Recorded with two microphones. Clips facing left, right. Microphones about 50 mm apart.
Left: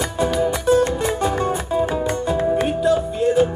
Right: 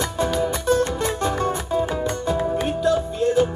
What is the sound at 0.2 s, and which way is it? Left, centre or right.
Music, centre.